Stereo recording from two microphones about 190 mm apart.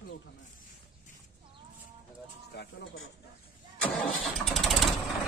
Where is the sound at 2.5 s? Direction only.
60° left (ahead or behind).